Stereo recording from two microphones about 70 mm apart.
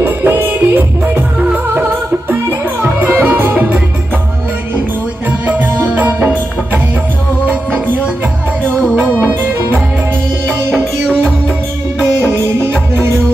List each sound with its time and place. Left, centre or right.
0.0 s music: right
2.8 s music: right
5.9 s music: right
9.0 s music: right
12.0 s music: right